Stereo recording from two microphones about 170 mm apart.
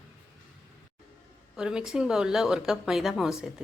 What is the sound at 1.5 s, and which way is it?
Speech, 5° right (ahead or behind).